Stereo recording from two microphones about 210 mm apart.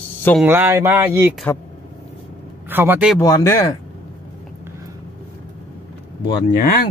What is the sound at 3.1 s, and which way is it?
Speech, 15° left (ahead or behind).